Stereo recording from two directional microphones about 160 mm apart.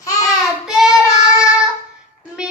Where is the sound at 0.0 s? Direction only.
25° left (ahead or behind).